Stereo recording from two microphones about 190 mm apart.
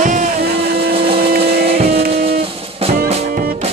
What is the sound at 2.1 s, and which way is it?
Music, 30° right (ahead or behind).